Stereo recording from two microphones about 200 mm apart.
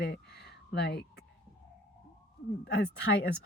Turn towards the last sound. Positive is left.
turn(degrees=50)  # may be behind; listen again after turning